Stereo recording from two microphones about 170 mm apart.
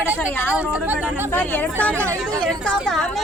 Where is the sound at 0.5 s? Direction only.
5° right (ahead or behind).